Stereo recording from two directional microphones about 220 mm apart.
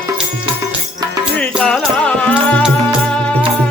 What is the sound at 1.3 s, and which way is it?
Music, 5° left (ahead or behind).